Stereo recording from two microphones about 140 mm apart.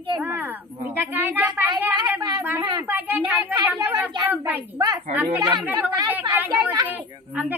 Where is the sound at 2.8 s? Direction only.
15° right (ahead or behind).